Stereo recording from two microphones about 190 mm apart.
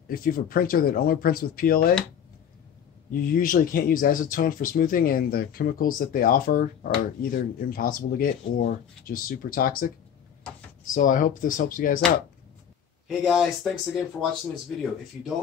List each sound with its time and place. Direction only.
0.1 s speech: 50° left (ahead or behind)
3.1 s speech: 45° left (ahead or behind)
13.1 s speech: centre (ahead or behind)
14.5 s speech: centre (ahead or behind)